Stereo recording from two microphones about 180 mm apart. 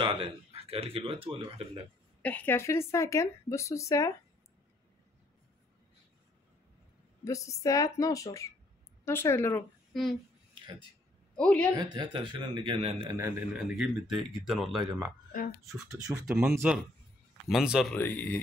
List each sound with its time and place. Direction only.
0.0 s speech: 30° right (ahead or behind)
2.2 s speech: 10° left (ahead or behind)
7.2 s speech: 20° left (ahead or behind)
9.9 s speech: centre (ahead or behind)
11.3 s speech: 5° left (ahead or behind)
11.7 s speech: 25° right (ahead or behind)
13.2 s speech: 5° right (ahead or behind)
15.6 s speech: 15° right (ahead or behind)
17.9 s speech: 10° left (ahead or behind)